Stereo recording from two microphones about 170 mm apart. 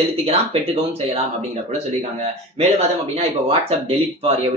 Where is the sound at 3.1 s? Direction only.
35° right (ahead or behind).